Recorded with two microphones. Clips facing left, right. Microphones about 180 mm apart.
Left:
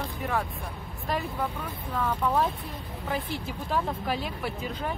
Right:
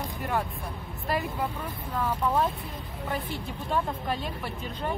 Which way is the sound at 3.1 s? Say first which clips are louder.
Left 2 dB; 5° left (ahead or behind).